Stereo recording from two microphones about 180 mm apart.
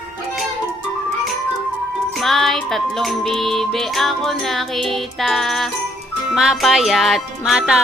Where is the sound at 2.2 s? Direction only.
Centre (ahead or behind).